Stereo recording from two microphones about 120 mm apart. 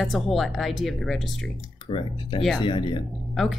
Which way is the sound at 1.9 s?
45° left (ahead or behind).